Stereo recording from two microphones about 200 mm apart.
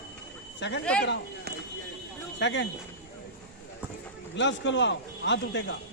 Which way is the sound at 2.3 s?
60° left (ahead or behind).